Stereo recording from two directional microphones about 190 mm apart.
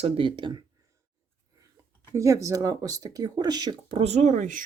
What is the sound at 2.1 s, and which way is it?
Speech, 15° right (ahead or behind).